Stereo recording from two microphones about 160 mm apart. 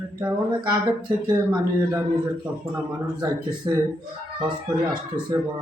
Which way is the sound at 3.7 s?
20° right (ahead or behind).